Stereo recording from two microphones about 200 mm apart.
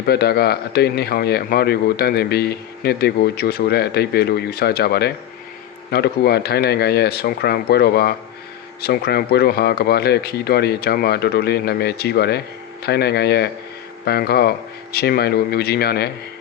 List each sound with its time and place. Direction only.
0.0 s speech: 50° left (ahead or behind)